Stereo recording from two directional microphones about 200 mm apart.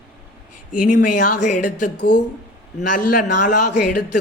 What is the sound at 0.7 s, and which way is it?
Speech, 40° left (ahead or behind).